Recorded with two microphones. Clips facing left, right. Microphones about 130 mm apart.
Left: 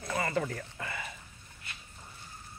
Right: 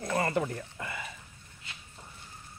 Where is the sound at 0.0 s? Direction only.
35° right (ahead or behind).